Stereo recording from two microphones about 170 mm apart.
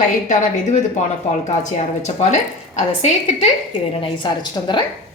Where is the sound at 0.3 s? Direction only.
45° left (ahead or behind).